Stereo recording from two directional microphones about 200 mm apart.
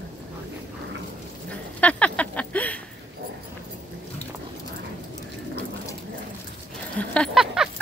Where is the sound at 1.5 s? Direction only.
5° left (ahead or behind).